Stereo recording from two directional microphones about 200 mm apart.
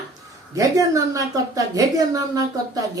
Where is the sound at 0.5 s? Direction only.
15° right (ahead or behind).